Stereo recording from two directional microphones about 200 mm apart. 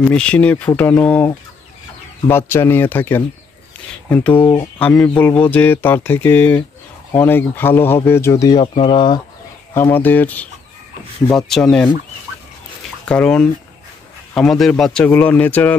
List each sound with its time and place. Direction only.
0.1 s speech: 5° left (ahead or behind); by 9.2 s 25° left (ahead or behind)
9.8 s speech: 10° left (ahead or behind)
13.0 s speech: 5° left (ahead or behind)